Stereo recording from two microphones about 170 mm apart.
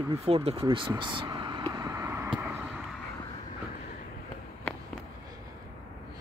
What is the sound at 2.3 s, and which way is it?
Vehicle, 5° right (ahead or behind).